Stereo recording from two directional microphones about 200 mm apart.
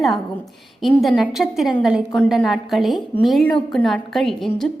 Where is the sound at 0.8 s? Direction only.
Centre (ahead or behind).